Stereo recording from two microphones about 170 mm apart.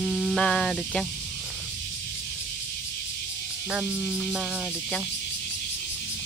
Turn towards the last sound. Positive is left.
turn(degrees=0)  # may be behind; listen again after turning